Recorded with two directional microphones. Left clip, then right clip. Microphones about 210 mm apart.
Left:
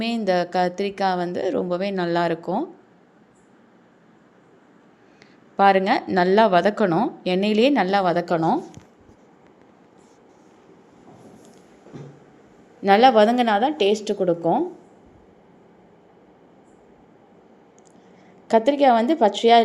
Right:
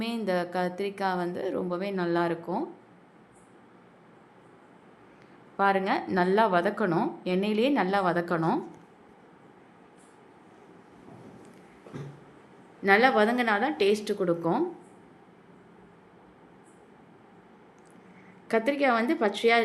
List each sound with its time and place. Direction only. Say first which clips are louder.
0.0 s a woman's voice: left 8 dB; 25° left (ahead or behind)
5.5 s a woman's voice: left 8 dB; 25° left (ahead or behind)
12.8 s a woman's voice: left 7 dB; 20° left (ahead or behind)
18.4 s a woman's voice: left 9 dB; 20° left (ahead or behind)